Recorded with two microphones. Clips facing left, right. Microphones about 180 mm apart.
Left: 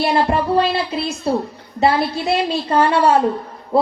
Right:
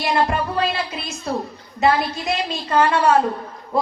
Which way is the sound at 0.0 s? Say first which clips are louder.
Left 3 dB; 30° left (ahead or behind).